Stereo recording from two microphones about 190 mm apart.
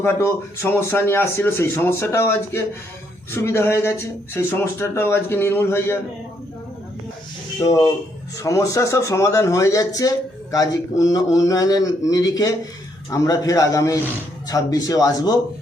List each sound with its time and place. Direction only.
0.0 s speech: 15° left (ahead or behind)
7.6 s speech: 20° left (ahead or behind)